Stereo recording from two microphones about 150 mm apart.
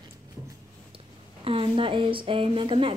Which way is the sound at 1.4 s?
35° right (ahead or behind).